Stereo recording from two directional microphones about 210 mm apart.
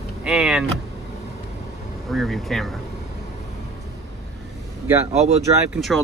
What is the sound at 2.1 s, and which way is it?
Speech, centre (ahead or behind).